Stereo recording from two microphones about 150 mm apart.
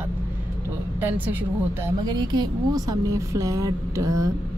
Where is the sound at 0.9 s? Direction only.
15° right (ahead or behind).